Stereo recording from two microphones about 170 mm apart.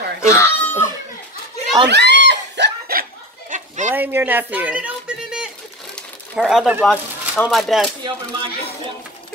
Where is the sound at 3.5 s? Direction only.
50° right (ahead or behind).